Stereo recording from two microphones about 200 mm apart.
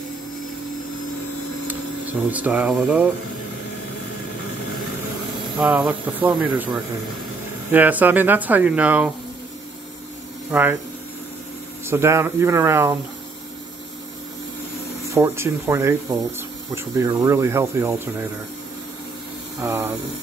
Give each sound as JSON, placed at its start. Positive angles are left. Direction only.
{"t": 1.7, "sound": "speech", "side_deg": -10}
{"t": 5.6, "sound": "speech", "side_deg": -5}
{"t": 10.5, "sound": "speech", "side_deg": -5}
{"t": 11.9, "sound": "speech", "side_deg": -10}
{"t": 15.0, "sound": "speech", "side_deg": -15}
{"t": 19.6, "sound": "speech", "side_deg": -10}